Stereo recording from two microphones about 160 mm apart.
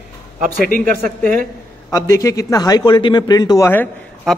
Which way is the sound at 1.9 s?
20° left (ahead or behind).